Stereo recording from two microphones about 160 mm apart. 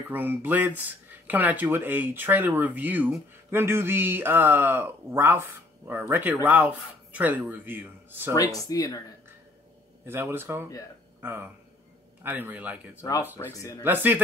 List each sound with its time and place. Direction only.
0.1 s speech: 10° right (ahead or behind)
8.6 s speech: 25° left (ahead or behind)
10.0 s speech: 15° right (ahead or behind)
13.4 s speech: 20° left (ahead or behind)
13.8 s speech: 10° right (ahead or behind)